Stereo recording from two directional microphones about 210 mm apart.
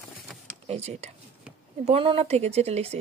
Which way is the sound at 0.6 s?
30° right (ahead or behind).